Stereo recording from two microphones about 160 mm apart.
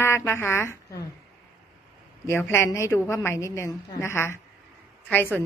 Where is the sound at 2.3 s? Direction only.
15° left (ahead or behind).